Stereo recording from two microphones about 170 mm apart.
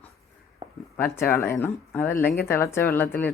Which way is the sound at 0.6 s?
35° right (ahead or behind).